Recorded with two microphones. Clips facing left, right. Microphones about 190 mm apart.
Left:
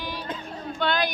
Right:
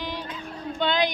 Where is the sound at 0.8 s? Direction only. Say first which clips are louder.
Right 2 dB; 20° right (ahead or behind).